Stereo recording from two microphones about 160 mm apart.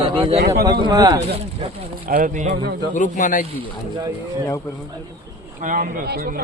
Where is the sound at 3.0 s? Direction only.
55° left (ahead or behind).